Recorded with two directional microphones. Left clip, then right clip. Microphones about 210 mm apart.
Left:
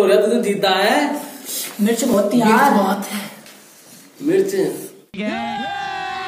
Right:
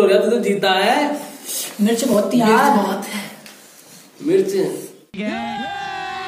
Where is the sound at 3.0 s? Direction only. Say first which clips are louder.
Even; 20° left (ahead or behind).